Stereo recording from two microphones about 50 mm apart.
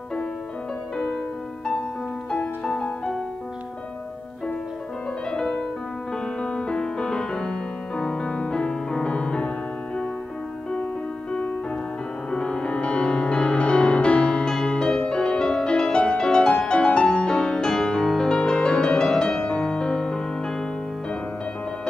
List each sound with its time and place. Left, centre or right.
2.3 s music: centre
5.3 s music: centre
12.3 s music: centre